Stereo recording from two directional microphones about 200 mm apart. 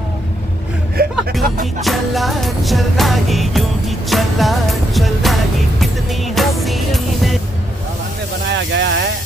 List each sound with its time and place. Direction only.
1.0 s music: 50° right (ahead or behind)
1.9 s music: centre (ahead or behind)
8.7 s speech: 60° right (ahead or behind)